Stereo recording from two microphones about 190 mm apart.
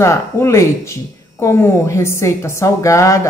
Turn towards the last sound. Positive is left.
turn(degrees=15)  # may be behind; listen again after turning